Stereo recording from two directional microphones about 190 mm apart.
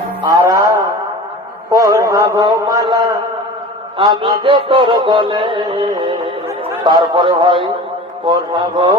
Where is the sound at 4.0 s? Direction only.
25° right (ahead or behind).